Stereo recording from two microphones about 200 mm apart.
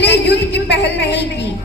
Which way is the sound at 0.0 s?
55° left (ahead or behind).